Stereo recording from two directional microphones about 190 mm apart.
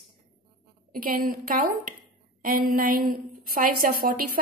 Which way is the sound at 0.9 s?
50° right (ahead or behind).